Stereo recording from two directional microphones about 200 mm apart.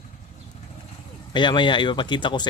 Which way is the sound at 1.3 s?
25° left (ahead or behind).